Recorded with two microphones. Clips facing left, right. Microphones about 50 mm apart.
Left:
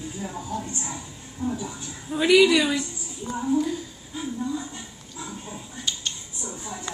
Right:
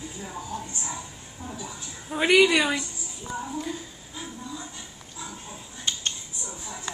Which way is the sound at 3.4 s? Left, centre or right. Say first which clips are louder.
Left 9 dB; centre.